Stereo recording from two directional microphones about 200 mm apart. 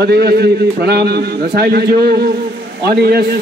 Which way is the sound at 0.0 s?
55° right (ahead or behind).